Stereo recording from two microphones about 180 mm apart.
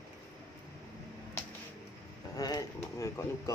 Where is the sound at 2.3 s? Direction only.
20° left (ahead or behind).